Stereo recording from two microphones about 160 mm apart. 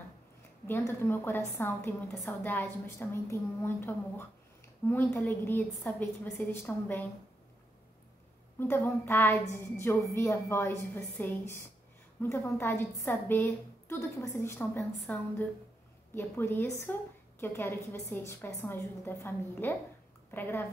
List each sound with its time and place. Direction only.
0.7 s a woman's voice: 15° left (ahead or behind)
8.5 s a woman's voice: 15° left (ahead or behind)